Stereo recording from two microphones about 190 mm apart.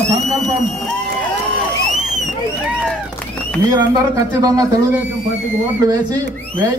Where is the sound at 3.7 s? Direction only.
15° right (ahead or behind).